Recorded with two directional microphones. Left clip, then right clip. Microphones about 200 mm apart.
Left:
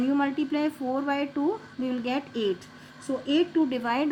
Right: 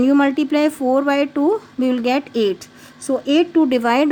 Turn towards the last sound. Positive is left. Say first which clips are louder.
# right 10 dB
turn(degrees=-55)  # may be behind; listen again after turning